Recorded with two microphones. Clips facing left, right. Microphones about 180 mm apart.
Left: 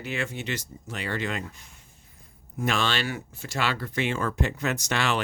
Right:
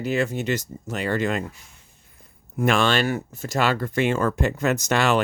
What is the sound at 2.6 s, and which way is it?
Speech, 55° right (ahead or behind).